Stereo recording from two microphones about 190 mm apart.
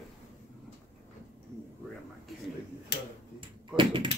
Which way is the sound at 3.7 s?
25° right (ahead or behind).